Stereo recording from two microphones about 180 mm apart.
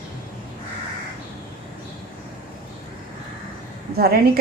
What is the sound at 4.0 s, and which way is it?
Speech, 60° right (ahead or behind).